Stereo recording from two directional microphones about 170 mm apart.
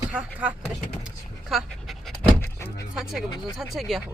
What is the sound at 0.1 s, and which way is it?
Speech, 5° right (ahead or behind).